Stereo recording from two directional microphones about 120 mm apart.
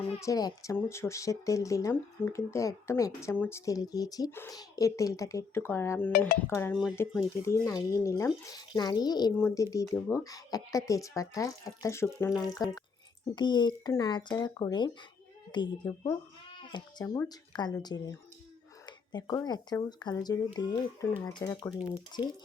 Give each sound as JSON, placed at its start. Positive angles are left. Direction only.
{"t": 0.2, "sound": "speech", "side_deg": 30}
{"t": 3.7, "sound": "speech", "side_deg": 30}
{"t": 4.3, "sound": "speech", "side_deg": 20}
{"t": 16.6, "sound": "bleat", "side_deg": 35}
{"t": 17.2, "sound": "speech", "side_deg": 35}